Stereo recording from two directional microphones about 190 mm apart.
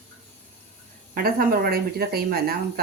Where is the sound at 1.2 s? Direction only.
50° right (ahead or behind).